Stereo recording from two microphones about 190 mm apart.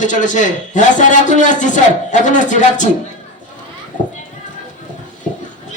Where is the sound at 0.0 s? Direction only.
40° left (ahead or behind).